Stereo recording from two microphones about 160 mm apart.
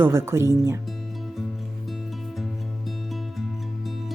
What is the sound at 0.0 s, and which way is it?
Speech, 15° right (ahead or behind).